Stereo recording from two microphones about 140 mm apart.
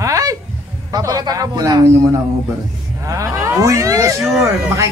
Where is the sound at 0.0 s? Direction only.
25° right (ahead or behind).